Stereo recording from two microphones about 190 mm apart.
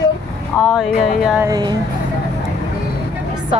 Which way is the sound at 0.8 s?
Centre (ahead or behind).